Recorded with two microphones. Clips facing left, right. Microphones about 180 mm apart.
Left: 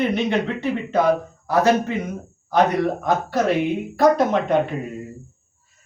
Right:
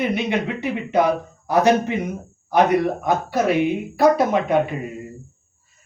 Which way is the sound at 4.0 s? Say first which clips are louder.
Even; 10° right (ahead or behind).